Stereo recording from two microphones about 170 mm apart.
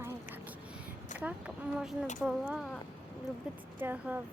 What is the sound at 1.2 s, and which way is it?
Speech, 5° right (ahead or behind).